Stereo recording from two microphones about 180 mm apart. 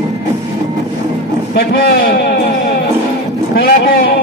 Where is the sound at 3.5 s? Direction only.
55° left (ahead or behind).